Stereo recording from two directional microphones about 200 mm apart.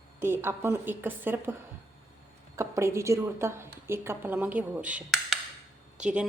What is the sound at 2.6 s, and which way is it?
A woman's voice, 15° right (ahead or behind).